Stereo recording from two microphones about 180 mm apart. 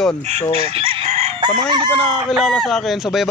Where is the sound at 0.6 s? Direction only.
35° right (ahead or behind).